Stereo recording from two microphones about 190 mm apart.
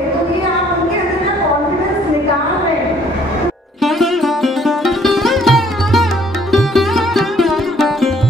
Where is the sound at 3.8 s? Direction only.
Centre (ahead or behind).